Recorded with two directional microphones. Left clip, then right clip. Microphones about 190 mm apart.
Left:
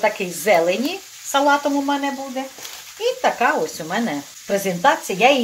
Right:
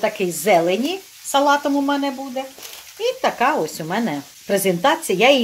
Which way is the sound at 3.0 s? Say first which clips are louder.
Even; 50° right (ahead or behind).